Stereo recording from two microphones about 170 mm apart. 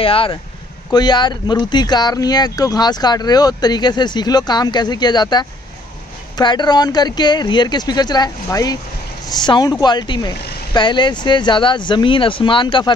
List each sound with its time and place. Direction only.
0.0 s speech: 35° left (ahead or behind)